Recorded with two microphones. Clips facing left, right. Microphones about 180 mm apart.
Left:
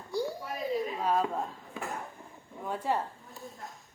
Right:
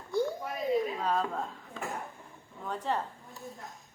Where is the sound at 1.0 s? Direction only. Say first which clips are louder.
Left 2 dB; 10° left (ahead or behind).